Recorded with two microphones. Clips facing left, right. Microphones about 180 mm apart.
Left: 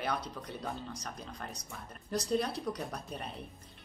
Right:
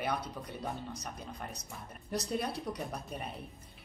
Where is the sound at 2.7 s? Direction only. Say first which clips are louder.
Even; 5° right (ahead or behind).